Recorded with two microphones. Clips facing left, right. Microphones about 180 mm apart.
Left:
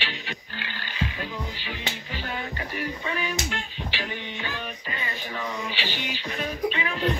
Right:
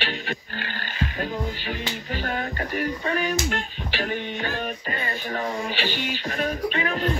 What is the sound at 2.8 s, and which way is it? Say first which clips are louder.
Music: right 5 dB; 50° right (ahead or behind).